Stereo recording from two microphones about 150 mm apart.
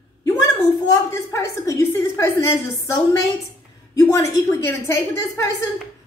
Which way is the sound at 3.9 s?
20° left (ahead or behind).